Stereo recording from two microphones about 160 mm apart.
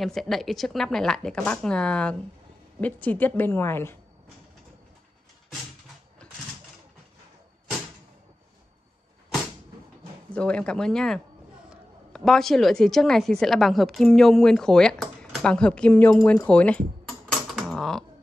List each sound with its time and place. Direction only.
0.0 s a woman's voice: centre (ahead or behind)
10.3 s a woman's voice: 5° left (ahead or behind)
17.3 s a sound: centre (ahead or behind)